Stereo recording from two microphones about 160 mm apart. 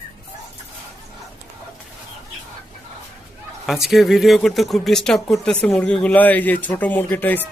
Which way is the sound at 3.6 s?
Centre (ahead or behind).